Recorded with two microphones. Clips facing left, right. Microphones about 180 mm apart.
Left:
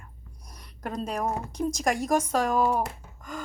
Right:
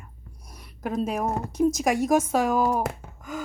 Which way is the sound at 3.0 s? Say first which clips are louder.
Right 6 dB; 60° right (ahead or behind).